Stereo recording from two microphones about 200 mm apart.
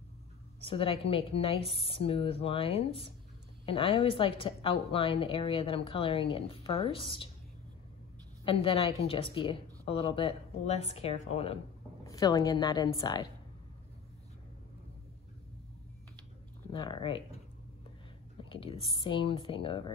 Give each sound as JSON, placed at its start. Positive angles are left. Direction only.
{"t": 0.7, "sound": "a woman's voice", "side_deg": 30}
{"t": 8.5, "sound": "a woman's voice", "side_deg": 30}
{"t": 12.0, "sound": "a woman's voice", "side_deg": 20}
{"t": 16.7, "sound": "a woman's voice", "side_deg": 25}
{"t": 18.4, "sound": "a woman's voice", "side_deg": 25}